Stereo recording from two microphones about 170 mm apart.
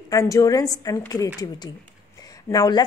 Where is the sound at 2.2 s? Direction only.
20° left (ahead or behind).